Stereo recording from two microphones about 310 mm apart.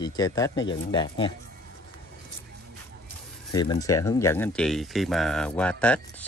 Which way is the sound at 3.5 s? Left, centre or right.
Centre.